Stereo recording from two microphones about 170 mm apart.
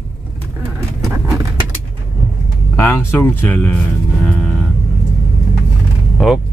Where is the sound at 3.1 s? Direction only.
10° left (ahead or behind).